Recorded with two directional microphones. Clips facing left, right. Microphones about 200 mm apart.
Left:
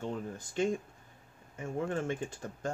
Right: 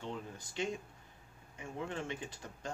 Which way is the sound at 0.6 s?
50° left (ahead or behind).